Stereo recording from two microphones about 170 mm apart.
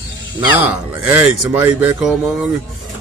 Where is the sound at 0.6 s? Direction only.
10° right (ahead or behind).